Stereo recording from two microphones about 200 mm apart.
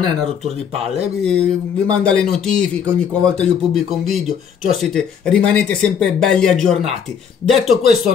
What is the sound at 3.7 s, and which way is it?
Speech, centre (ahead or behind).